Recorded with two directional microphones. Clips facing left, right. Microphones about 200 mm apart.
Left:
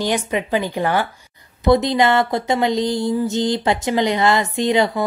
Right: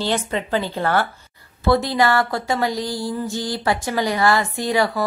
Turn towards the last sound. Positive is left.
turn(degrees=20)  # may be behind; listen again after turning